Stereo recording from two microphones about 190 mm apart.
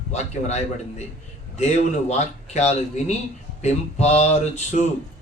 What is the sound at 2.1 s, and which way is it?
A man's voice, 35° left (ahead or behind).